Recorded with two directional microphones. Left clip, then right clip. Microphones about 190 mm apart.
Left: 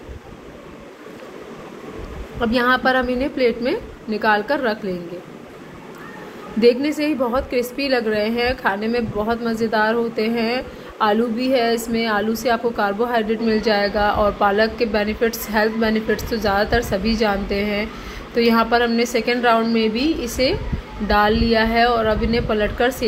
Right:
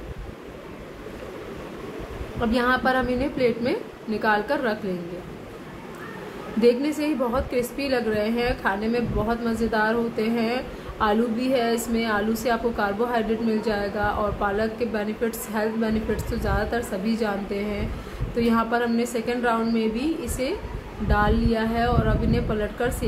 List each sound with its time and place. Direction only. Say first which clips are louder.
2.4 s a woman's voice: left 5 dB; 15° left (ahead or behind)
6.6 s a woman's voice: left 4 dB; 20° left (ahead or behind)